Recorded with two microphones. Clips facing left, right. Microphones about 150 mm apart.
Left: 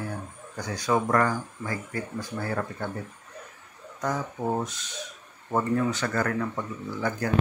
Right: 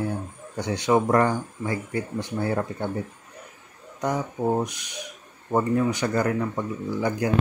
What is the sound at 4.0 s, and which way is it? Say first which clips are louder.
Speech: right 3 dB; 20° right (ahead or behind).